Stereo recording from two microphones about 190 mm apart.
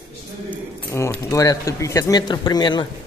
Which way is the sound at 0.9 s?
15° left (ahead or behind).